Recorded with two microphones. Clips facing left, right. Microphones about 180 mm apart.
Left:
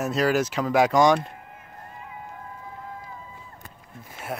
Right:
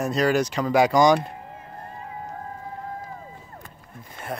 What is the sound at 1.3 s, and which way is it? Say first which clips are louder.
Vehicle: right 5 dB; 30° right (ahead or behind).